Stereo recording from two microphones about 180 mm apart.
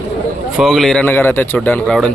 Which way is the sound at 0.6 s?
Centre (ahead or behind).